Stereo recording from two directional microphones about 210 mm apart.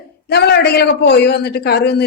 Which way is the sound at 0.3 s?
50° left (ahead or behind).